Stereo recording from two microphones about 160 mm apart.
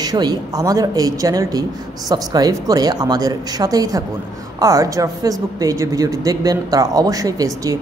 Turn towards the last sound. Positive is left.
turn(degrees=-20)  # may be behind; listen again after turning